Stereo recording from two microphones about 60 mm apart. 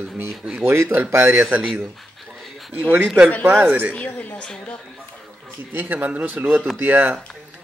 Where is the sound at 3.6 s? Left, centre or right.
Right.